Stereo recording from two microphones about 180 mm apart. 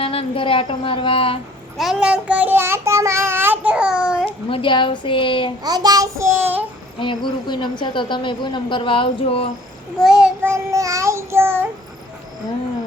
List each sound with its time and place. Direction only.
0.0 s speech: 30° left (ahead or behind)
1.8 s a child's voice: 5° right (ahead or behind)
4.4 s a woman's voice: 30° left (ahead or behind)
5.6 s child singing: 20° right (ahead or behind)
7.0 s a woman's voice: 25° left (ahead or behind)
10.0 s child singing: centre (ahead or behind)
10.4 s child singing: 15° right (ahead or behind)